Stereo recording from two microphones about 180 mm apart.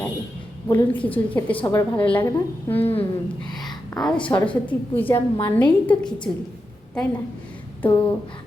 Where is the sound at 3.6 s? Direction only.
Centre (ahead or behind).